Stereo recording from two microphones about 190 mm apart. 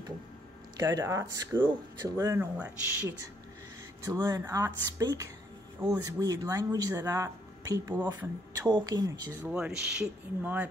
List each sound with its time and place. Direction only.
0.7 s speech: 20° right (ahead or behind)
4.1 s speech: 15° right (ahead or behind)
8.6 s speech: 20° right (ahead or behind)
9.5 s speech: 5° right (ahead or behind)